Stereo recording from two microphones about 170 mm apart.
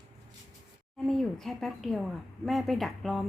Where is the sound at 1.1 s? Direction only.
Centre (ahead or behind).